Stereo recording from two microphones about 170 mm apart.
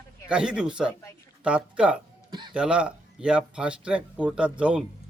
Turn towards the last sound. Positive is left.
turn(degrees=-5)  # may be behind; listen again after turning